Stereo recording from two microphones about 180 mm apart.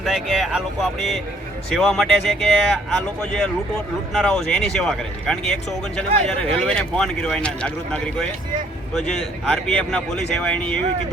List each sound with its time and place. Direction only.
0.0 s speech: centre (ahead or behind)
9.0 s speech: 5° left (ahead or behind)